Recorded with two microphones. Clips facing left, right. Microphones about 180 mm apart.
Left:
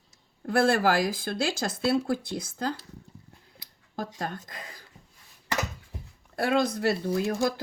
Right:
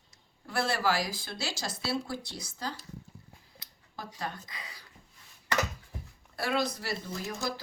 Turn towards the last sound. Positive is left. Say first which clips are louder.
# left 9 dB
turn(degrees=55)  # may be behind; listen again after turning